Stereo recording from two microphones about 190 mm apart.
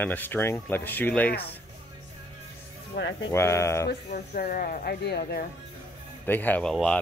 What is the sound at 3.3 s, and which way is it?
Speech, 15° left (ahead or behind).